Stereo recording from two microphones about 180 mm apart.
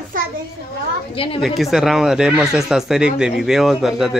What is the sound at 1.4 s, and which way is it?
Speech, centre (ahead or behind).